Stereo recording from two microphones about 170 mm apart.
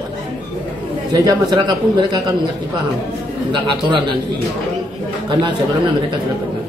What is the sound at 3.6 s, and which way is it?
Speech, 30° right (ahead or behind).